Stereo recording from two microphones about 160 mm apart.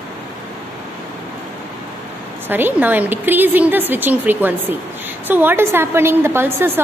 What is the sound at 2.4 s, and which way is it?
A woman's voice, 10° right (ahead or behind).